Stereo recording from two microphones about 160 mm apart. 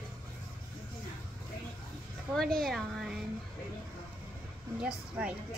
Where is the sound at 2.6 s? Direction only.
Centre (ahead or behind).